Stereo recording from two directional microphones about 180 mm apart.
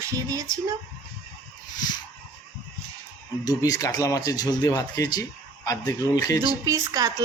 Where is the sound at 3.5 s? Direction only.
20° left (ahead or behind).